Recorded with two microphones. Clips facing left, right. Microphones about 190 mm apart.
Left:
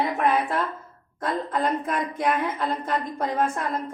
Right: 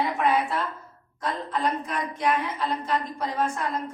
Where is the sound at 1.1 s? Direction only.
50° left (ahead or behind).